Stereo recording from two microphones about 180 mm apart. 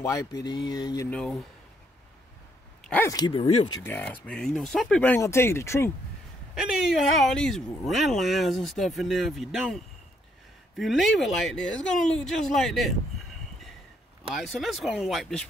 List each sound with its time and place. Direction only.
0.0 s speech: 20° left (ahead or behind)
1.1 s speech: 5° left (ahead or behind)
2.8 s speech: 10° left (ahead or behind); by 3.7 s 35° left (ahead or behind)
3.8 s speech: 10° left (ahead or behind)
6.5 s speech: centre (ahead or behind)
14.3 s speech: centre (ahead or behind)